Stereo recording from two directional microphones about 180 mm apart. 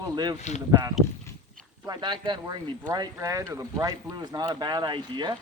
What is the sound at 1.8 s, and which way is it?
Speech, 25° right (ahead or behind).